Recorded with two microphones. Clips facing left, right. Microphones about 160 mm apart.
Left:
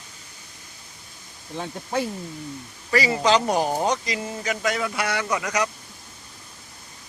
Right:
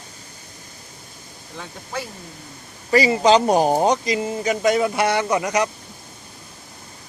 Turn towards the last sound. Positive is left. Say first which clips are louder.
# right 5 dB
turn(degrees=-25)  # may be behind; listen again after turning